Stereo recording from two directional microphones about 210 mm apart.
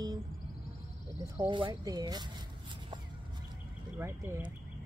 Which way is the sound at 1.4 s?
20° right (ahead or behind).